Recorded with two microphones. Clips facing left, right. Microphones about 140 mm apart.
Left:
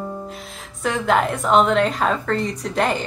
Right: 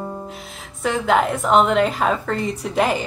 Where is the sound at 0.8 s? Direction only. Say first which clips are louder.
Right 1 dB; centre (ahead or behind).